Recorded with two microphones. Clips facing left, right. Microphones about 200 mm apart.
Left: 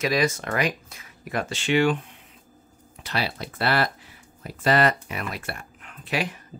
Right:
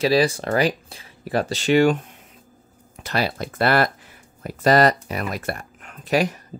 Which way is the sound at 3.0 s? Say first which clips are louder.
Right 5 dB; 45° right (ahead or behind).